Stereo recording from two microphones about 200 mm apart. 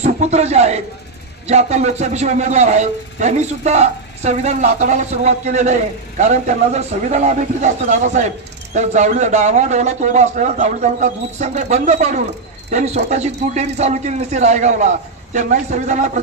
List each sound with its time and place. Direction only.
0.0 s a man's voice: 35° right (ahead or behind)